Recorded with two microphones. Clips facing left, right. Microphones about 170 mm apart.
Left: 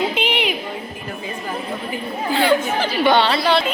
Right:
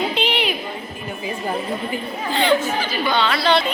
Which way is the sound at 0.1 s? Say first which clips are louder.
Even; 15° left (ahead or behind).